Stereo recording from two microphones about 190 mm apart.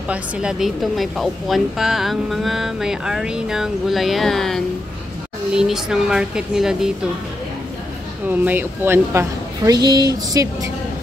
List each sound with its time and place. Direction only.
0.1 s a woman's voice: 5° right (ahead or behind)
8.3 s a woman's voice: 10° right (ahead or behind)